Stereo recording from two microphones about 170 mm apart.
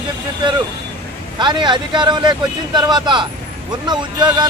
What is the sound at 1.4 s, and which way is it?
Speech, 25° right (ahead or behind).